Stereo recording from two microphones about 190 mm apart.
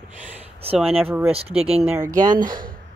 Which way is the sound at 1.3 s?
30° right (ahead or behind).